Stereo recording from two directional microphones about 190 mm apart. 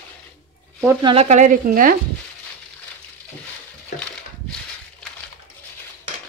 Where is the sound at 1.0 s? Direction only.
30° right (ahead or behind).